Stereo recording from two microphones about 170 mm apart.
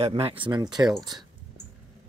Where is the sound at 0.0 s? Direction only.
35° right (ahead or behind).